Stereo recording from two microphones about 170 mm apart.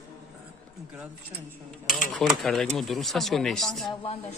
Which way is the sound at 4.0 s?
40° left (ahead or behind).